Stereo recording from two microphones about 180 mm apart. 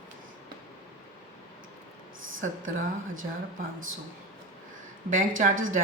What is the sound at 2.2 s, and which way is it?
Speech, 90° right.